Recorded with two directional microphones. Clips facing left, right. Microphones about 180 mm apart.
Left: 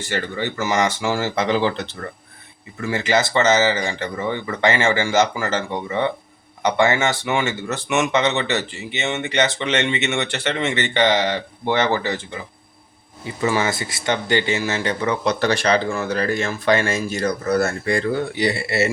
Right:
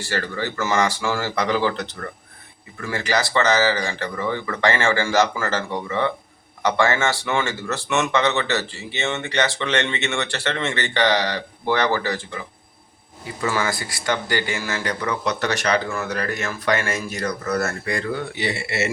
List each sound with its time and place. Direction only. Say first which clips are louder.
0.0 s speech: left 1 dB; 20° left (ahead or behind)
13.4 s speech: left 3 dB; 20° left (ahead or behind)